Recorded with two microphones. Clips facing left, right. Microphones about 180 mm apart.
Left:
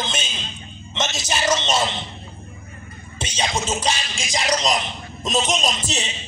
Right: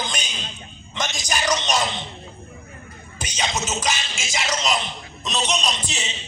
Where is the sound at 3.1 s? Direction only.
30° left (ahead or behind).